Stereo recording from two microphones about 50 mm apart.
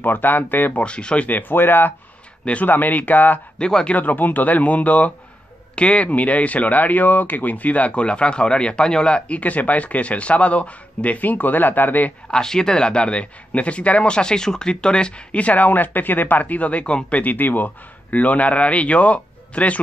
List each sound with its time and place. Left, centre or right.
0.0 s speech: left
0.7 s speech: left
1.3 s speech: left
2.4 s speech: left
3.5 s speech: centre
3.9 s speech: left; by 9.4 s centre
9.4 s speech: left
12.3 s speech: centre
17.2 s speech: left